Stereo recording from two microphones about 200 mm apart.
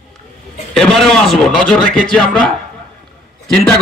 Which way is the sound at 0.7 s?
Centre (ahead or behind).